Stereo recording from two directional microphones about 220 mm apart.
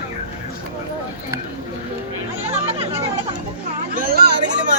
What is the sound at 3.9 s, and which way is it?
Chatter, 40° right (ahead or behind).